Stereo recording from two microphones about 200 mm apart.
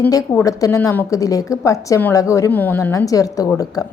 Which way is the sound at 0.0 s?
15° left (ahead or behind).